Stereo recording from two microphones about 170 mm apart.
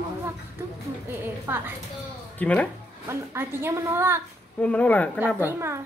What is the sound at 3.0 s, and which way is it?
Child singing, 15° right (ahead or behind).